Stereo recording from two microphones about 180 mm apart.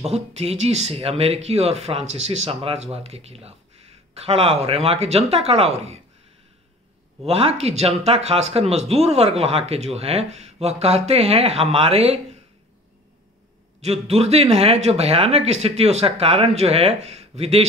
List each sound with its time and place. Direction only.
0.0 s speech: 35° right (ahead or behind)
7.2 s speech: 35° right (ahead or behind)
13.7 s speech: 35° right (ahead or behind)